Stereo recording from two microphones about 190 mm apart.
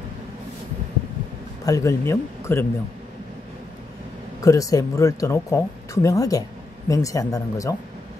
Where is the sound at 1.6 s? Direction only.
15° left (ahead or behind).